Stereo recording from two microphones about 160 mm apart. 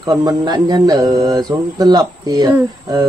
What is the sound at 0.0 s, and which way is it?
Speech, 25° right (ahead or behind).